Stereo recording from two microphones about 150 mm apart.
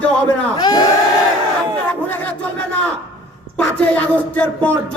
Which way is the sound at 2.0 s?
10° left (ahead or behind).